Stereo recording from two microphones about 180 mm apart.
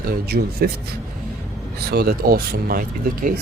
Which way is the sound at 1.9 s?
60° right (ahead or behind).